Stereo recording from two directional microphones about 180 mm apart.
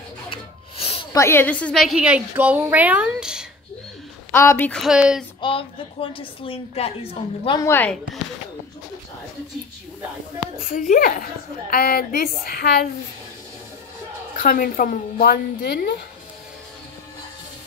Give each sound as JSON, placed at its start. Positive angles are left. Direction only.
{"t": 0.3, "sound": "filing", "side_deg": 30}
{"t": 1.1, "sound": "a woman's voice", "side_deg": 15}
{"t": 4.3, "sound": "a woman's voice", "side_deg": 15}
{"t": 5.4, "sound": "a woman's voice", "side_deg": 30}
{"t": 7.6, "sound": "speech", "side_deg": 10}
{"t": 10.7, "sound": "a woman's voice", "side_deg": 50}
{"t": 14.4, "sound": "a woman's voice", "side_deg": 50}